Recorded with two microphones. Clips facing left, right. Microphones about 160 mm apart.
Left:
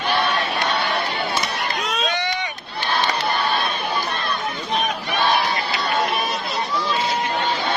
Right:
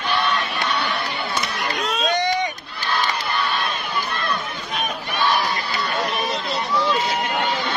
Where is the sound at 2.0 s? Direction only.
40° right (ahead or behind).